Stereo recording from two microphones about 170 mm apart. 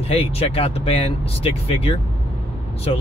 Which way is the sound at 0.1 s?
35° left (ahead or behind).